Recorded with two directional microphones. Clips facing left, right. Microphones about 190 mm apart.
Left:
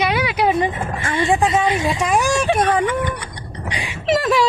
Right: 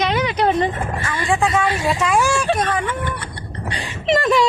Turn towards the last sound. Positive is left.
turn(degrees=5)  # may be behind; listen again after turning